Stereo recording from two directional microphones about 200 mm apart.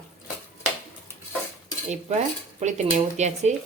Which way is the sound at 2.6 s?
35° right (ahead or behind).